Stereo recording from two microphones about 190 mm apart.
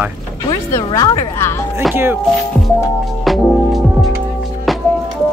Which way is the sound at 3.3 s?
Centre (ahead or behind).